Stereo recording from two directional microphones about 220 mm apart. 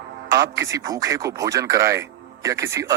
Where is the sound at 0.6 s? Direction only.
15° right (ahead or behind).